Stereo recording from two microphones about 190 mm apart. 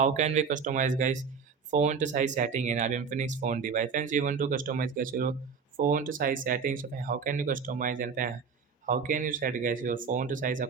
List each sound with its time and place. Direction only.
0.0 s speech: 40° right (ahead or behind)